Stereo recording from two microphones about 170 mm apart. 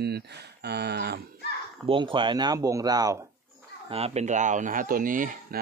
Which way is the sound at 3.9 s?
35° right (ahead or behind).